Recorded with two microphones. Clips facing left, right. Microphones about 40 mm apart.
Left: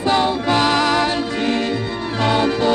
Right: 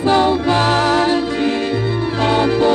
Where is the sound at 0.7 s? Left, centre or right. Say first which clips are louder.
Right 2 dB; left.